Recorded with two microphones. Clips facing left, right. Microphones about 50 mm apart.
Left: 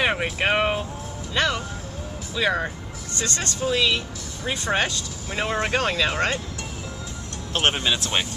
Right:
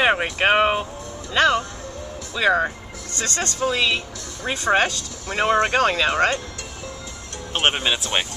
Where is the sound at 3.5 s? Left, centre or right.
Right.